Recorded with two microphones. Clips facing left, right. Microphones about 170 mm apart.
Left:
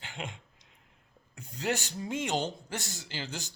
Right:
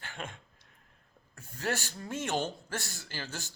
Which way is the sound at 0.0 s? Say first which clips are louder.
Left 1 dB; 15° left (ahead or behind).